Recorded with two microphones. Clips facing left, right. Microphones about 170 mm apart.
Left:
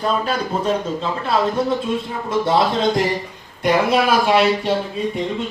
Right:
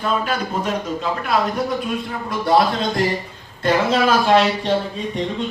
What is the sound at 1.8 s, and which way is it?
A man's voice, 25° left (ahead or behind).